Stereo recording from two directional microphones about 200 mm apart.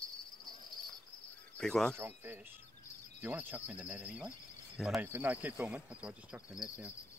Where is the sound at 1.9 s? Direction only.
10° right (ahead or behind).